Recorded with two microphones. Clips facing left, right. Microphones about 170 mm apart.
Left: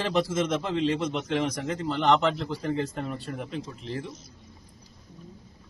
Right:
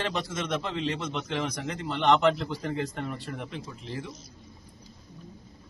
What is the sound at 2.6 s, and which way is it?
Speech, 30° left (ahead or behind).